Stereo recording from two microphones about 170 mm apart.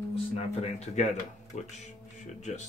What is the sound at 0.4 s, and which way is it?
Speech, 40° left (ahead or behind).